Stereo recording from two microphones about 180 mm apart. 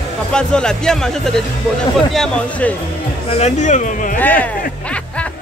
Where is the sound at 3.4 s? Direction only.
40° left (ahead or behind).